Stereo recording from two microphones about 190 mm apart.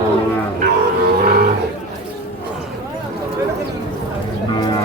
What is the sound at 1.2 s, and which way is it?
Livestock, 55° right (ahead or behind).